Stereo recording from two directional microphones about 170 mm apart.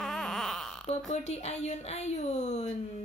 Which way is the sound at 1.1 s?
40° left (ahead or behind).